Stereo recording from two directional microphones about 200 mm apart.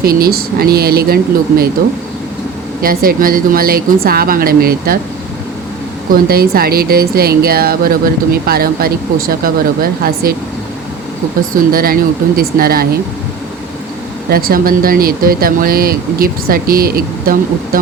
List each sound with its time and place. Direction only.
0.0 s speech: 50° right (ahead or behind)
2.8 s speech: 45° right (ahead or behind)
6.1 s speech: 50° right (ahead or behind)
11.5 s speech: 45° right (ahead or behind)
14.3 s speech: 50° right (ahead or behind)